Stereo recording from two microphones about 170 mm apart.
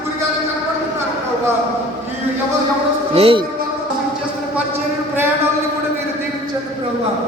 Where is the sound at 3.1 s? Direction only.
35° right (ahead or behind).